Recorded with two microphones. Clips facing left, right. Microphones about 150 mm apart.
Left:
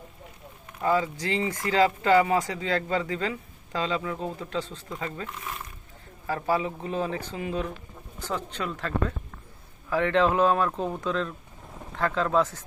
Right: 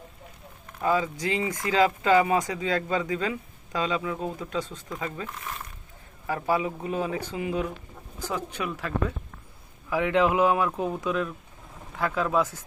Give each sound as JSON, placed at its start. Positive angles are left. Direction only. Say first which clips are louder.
{"t": 0.8, "sound": "speech", "louder": "even", "side_deg": -15}
{"t": 6.2, "sound": "speech", "louder": "even", "side_deg": -15}